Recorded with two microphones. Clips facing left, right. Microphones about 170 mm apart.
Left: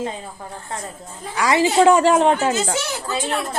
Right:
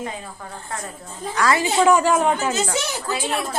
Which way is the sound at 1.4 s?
15° left (ahead or behind).